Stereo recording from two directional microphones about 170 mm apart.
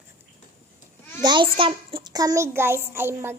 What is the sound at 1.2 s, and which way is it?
A child's voice, 25° right (ahead or behind).